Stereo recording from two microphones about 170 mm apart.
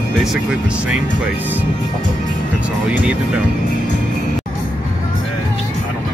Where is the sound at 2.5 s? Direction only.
5° right (ahead or behind).